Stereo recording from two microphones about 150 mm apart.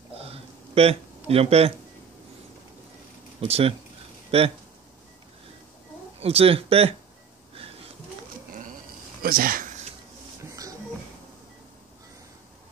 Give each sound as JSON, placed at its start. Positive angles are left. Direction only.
{"t": 0.2, "sound": "a sound", "side_deg": -40}
{"t": 3.3, "sound": "speech", "side_deg": -40}
{"t": 6.2, "sound": "speech", "side_deg": -40}
{"t": 9.2, "sound": "speech", "side_deg": -75}